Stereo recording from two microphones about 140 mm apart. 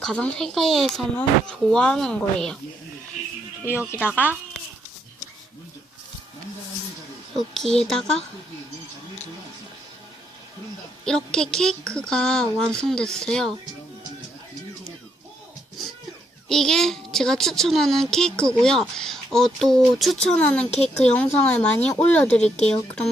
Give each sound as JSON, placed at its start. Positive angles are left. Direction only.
{"t": 0.0, "sound": "speech", "side_deg": 5}
{"t": 3.6, "sound": "speech", "side_deg": 15}
{"t": 7.3, "sound": "speech", "side_deg": 5}
{"t": 11.0, "sound": "speech", "side_deg": 5}
{"t": 16.5, "sound": "speech", "side_deg": 5}
{"t": 20.7, "sound": "a woman's voice", "side_deg": 50}
{"t": 21.0, "sound": "speech", "side_deg": 10}